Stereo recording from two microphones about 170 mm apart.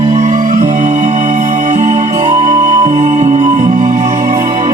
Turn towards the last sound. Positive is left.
turn(degrees=-40)  # may be behind; listen again after turning